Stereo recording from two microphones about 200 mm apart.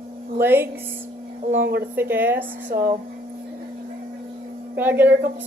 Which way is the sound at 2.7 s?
45° right (ahead or behind).